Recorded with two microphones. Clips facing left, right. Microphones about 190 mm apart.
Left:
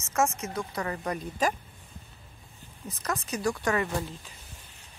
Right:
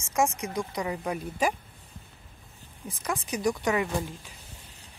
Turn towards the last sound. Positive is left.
turn(degrees=-10)  # may be behind; listen again after turning